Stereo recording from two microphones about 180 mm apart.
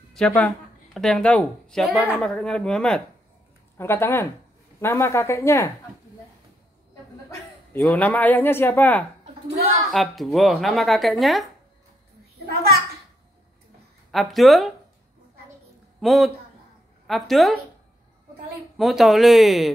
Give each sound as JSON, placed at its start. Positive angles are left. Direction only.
{"t": 0.1, "sound": "a woman's voice", "side_deg": 5}
{"t": 7.8, "sound": "speech", "side_deg": 10}
{"t": 9.8, "sound": "a woman's voice", "side_deg": 0}
{"t": 14.1, "sound": "a woman's voice", "side_deg": 0}
{"t": 16.0, "sound": "a woman's voice", "side_deg": 0}
{"t": 18.8, "sound": "a woman's voice", "side_deg": 0}